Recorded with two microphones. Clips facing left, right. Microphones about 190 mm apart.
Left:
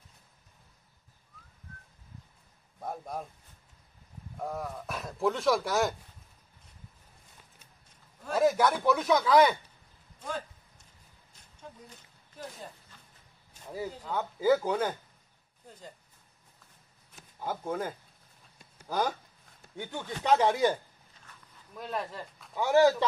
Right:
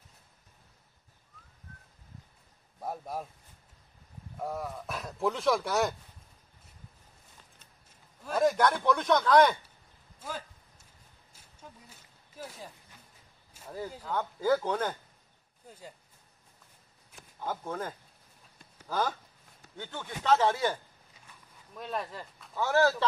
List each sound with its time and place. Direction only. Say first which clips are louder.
2.8 s speech: right 1 dB; 5° right (ahead or behind)
4.4 s speech: even; centre (ahead or behind)
8.3 s speech: left 1 dB; 5° left (ahead or behind)
10.2 s a sound: left 3 dB; 5° right (ahead or behind)
11.9 s a sound: left 1 dB; 5° right (ahead or behind)
14.0 s speech: left 3 dB; 10° left (ahead or behind)
17.4 s speech: left 2 dB; 10° left (ahead or behind)
21.7 s speech: left 1 dB; centre (ahead or behind)
22.6 s speech: left 3 dB; 15° left (ahead or behind)